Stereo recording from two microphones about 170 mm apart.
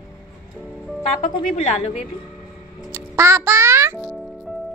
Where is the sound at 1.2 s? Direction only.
40° left (ahead or behind).